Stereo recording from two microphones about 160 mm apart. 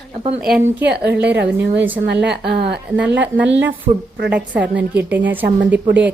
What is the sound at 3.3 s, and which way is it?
A woman's voice, 10° right (ahead or behind).